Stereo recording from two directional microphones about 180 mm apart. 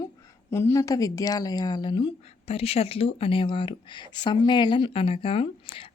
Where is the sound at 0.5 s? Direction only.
15° left (ahead or behind).